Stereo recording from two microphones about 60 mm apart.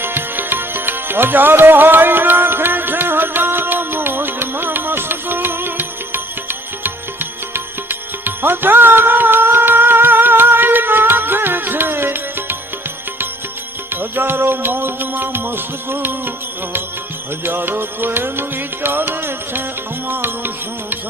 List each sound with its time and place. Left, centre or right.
0.0 s music: right
13.9 s music: right
17.4 s music: right